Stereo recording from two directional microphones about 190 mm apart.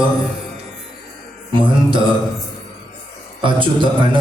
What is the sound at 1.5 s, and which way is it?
Speech, 25° right (ahead or behind).